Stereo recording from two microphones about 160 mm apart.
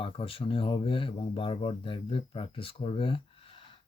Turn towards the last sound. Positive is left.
turn(degrees=35)  # may be behind; listen again after turning